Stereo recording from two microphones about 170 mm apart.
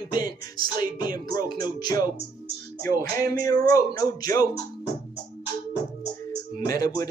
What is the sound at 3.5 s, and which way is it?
Speech, 20° left (ahead or behind).